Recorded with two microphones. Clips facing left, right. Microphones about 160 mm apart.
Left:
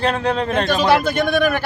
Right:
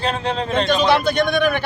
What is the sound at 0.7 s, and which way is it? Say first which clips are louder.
Speech: even; 5° left (ahead or behind).